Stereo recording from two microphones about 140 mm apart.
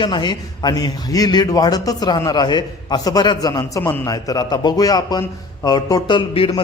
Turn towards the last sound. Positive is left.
turn(degrees=35)  # may be behind; listen again after turning